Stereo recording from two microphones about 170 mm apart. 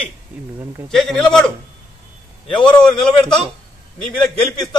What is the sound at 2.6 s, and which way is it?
Speech, 5° left (ahead or behind).